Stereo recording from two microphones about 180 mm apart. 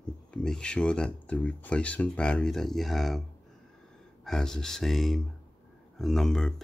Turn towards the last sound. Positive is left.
turn(degrees=5)  # may be behind; listen again after turning